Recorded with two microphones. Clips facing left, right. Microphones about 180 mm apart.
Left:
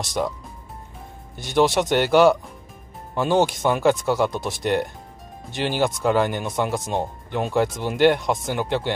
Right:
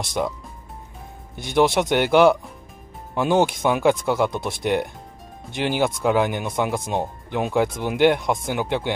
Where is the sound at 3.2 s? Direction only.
15° right (ahead or behind).